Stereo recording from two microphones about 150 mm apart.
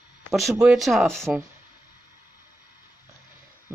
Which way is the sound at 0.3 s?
Centre (ahead or behind).